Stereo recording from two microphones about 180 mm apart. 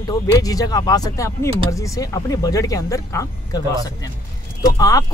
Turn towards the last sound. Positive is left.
turn(degrees=20)  # may be behind; listen again after turning